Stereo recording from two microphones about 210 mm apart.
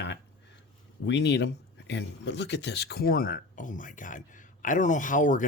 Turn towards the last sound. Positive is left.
turn(degrees=40)  # may be behind; listen again after turning